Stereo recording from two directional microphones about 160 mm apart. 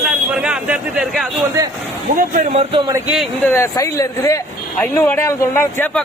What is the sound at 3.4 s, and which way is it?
A man's voice, 15° left (ahead or behind).